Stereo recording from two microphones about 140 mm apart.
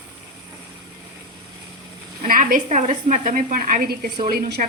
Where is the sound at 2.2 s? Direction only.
80° right.